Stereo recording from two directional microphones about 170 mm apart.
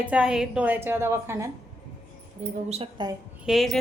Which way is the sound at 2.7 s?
30° right (ahead or behind).